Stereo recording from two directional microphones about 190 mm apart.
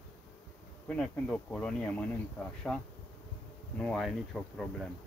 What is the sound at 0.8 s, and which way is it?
Speech, 5° left (ahead or behind).